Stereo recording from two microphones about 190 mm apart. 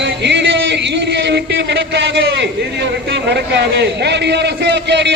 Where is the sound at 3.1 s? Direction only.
65° right (ahead or behind).